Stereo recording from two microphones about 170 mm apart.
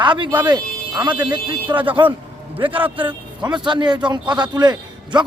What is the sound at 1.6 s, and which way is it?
Speech, 10° right (ahead or behind).